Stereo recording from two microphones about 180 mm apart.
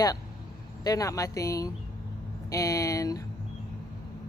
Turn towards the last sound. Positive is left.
turn(degrees=20)  # may be behind; listen again after turning